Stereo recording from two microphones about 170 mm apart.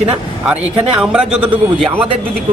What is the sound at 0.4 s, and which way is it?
Speech, 5° right (ahead or behind).